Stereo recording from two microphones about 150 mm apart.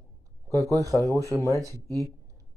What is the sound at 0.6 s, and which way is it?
Speech, 20° right (ahead or behind).